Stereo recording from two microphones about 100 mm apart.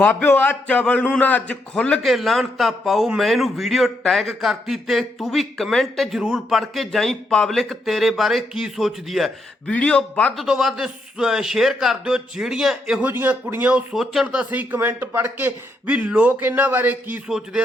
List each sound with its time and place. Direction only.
0.0 s a man's voice: 20° left (ahead or behind); by 9.7 s centre (ahead or behind)
9.7 s a man's voice: 10° left (ahead or behind)
10.3 s a man's voice: 5° right (ahead or behind)
13.1 s speech: 20° right (ahead or behind)
13.9 s speech: centre (ahead or behind); by 17.2 s 20° right (ahead or behind)
17.2 s a man's voice: 5° right (ahead or behind)